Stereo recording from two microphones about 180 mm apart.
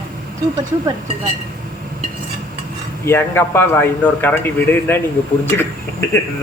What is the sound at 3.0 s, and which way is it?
A man's voice, 10° left (ahead or behind).